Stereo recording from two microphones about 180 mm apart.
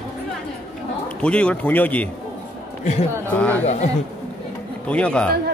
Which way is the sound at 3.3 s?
10° left (ahead or behind).